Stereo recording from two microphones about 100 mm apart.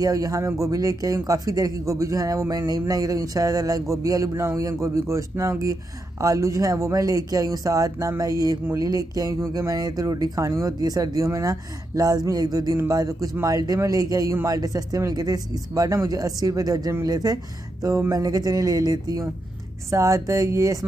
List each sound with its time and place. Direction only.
0.0 s a man's voice: 35° right (ahead or behind)